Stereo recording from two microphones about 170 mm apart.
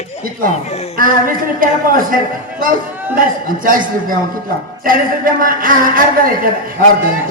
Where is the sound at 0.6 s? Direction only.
40° left (ahead or behind).